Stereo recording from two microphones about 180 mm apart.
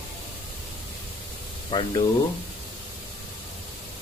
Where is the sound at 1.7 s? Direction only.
25° left (ahead or behind).